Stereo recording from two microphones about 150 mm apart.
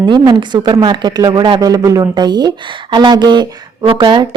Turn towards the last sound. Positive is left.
turn(degrees=-35)  # may be behind; listen again after turning